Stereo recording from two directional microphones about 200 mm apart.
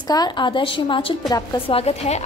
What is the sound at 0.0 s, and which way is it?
A woman's voice, 20° left (ahead or behind).